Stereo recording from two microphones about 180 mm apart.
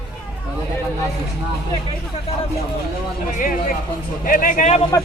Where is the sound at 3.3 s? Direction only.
50° left (ahead or behind).